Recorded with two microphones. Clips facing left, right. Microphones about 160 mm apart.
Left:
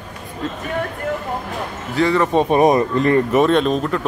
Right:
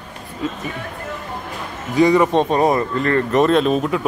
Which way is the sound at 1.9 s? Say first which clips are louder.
Right 3 dB; 15° right (ahead or behind).